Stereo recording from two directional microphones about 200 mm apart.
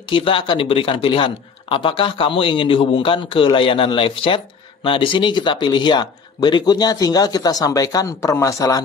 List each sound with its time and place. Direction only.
0.1 s speech: 25° left (ahead or behind)